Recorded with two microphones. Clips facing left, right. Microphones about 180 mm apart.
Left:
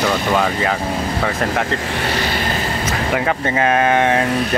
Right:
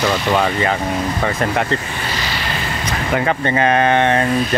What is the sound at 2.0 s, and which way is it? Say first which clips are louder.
Vehicle: left 4 dB; 60° left (ahead or behind).